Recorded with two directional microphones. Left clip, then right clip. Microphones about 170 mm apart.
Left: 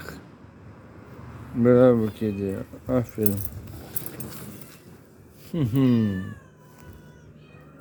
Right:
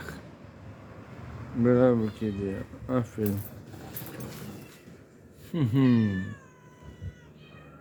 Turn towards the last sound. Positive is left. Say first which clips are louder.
# left 2 dB
turn(degrees=10)  # may be behind; listen again after turning